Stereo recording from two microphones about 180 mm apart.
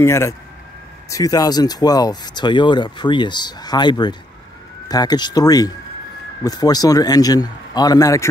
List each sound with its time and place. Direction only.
0.0 s speech: 15° left (ahead or behind)